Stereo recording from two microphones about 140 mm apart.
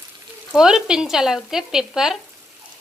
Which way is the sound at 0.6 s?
5° right (ahead or behind).